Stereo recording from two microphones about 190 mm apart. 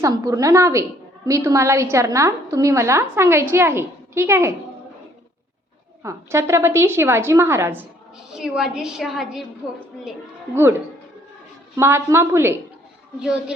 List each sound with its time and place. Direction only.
0.0 s a woman's voice: 15° right (ahead or behind)
6.0 s a woman's voice: 15° right (ahead or behind)
10.5 s a woman's voice: 10° right (ahead or behind)
11.8 s a woman's voice: 15° right (ahead or behind)